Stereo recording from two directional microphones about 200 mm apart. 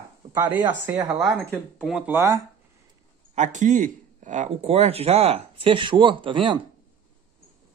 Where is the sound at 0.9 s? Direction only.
20° right (ahead or behind).